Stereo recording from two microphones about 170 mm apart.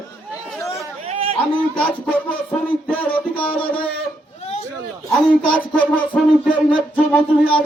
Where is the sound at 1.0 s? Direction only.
35° right (ahead or behind).